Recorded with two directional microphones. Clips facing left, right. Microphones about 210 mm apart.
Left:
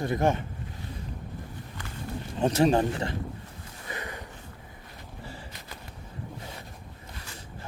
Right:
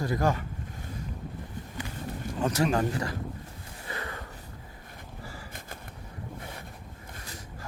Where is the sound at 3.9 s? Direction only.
20° left (ahead or behind).